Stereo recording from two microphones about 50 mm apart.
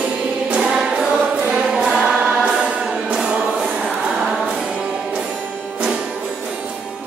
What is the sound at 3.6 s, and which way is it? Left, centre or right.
Music, right.